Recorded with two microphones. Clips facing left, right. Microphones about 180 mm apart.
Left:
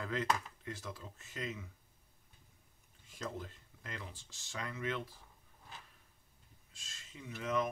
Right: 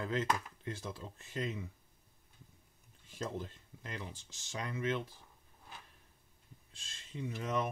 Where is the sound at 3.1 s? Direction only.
30° right (ahead or behind).